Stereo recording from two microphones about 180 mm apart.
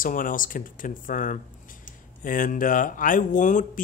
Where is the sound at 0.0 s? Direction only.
50° left (ahead or behind).